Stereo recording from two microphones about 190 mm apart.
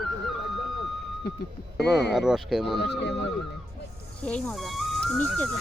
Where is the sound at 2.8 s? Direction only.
65° left (ahead or behind).